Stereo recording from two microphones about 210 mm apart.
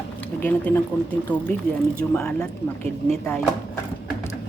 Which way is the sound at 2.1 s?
5° left (ahead or behind).